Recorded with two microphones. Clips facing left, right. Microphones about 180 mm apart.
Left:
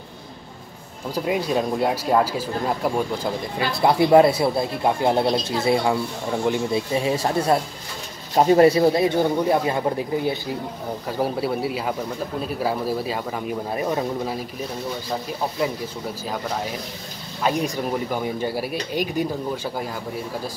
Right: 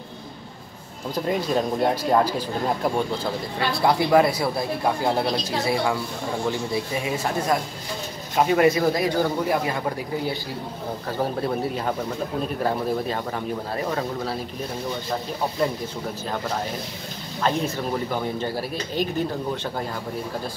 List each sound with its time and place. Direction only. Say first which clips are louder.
1.1 s speech: left 1 dB; 10° left (ahead or behind)
3.5 s speech: left 2 dB; 20° left (ahead or behind)
6.9 s speech: left 4 dB; 30° left (ahead or behind)
11.1 s speech: left 2 dB; 10° left (ahead or behind)
17.4 s speech: left 1 dB; 15° left (ahead or behind)